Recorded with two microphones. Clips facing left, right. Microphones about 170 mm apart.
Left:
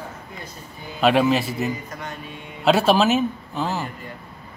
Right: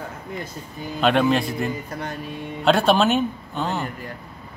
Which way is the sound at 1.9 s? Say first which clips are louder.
Right 3 dB; 35° right (ahead or behind).